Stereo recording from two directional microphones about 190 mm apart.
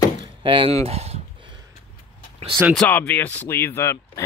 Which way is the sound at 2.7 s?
5° left (ahead or behind).